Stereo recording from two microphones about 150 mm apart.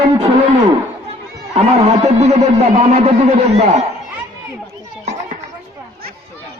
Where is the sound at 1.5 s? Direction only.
45° right (ahead or behind).